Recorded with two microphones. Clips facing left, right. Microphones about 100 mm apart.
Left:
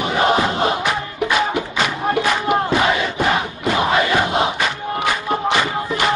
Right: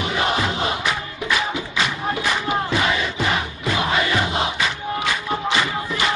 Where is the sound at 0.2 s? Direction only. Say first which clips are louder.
Left 6 dB; 45° left (ahead or behind).